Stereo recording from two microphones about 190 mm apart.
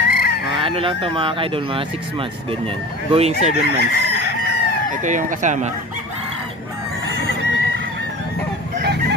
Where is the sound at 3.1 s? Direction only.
35° right (ahead or behind).